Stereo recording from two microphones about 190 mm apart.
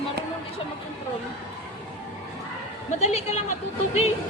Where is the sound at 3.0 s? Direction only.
35° left (ahead or behind).